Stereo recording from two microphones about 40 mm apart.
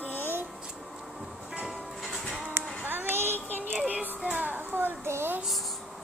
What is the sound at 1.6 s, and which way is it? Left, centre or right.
Music, centre.